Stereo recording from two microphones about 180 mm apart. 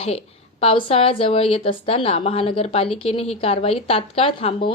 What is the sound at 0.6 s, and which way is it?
A woman's voice, 30° left (ahead or behind).